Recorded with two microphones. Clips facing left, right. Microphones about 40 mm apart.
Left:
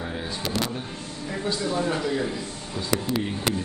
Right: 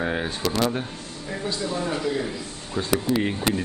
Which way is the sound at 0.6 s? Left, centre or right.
Right.